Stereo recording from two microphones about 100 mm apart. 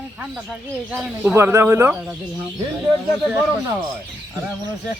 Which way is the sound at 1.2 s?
20° right (ahead or behind).